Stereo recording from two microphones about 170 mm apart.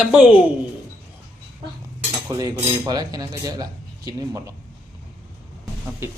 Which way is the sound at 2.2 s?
20° right (ahead or behind).